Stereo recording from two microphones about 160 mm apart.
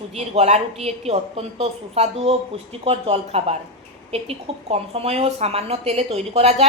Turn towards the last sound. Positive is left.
turn(degrees=-40)  # may be behind; listen again after turning